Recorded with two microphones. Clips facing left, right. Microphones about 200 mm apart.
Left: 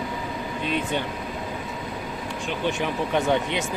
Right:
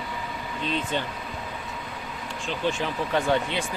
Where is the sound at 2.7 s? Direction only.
15° left (ahead or behind).